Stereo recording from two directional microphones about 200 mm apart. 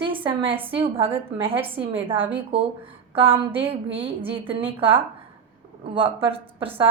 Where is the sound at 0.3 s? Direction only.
25° right (ahead or behind).